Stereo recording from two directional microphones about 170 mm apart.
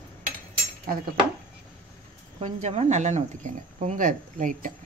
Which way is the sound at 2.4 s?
40° right (ahead or behind).